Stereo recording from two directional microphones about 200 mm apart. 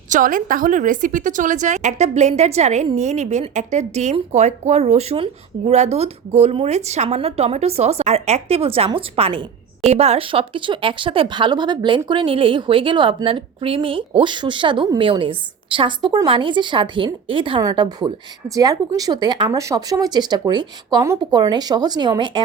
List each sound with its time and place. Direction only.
0.1 s a woman's voice: 45° right (ahead or behind); by 22.4 s 25° right (ahead or behind)